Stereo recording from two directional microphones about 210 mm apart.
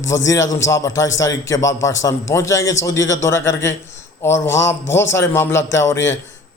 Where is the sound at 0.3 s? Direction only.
15° left (ahead or behind).